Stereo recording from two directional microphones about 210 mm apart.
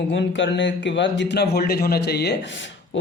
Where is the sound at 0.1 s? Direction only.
60° left (ahead or behind).